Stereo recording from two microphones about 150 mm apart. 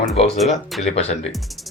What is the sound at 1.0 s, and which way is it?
Speech, 45° left (ahead or behind).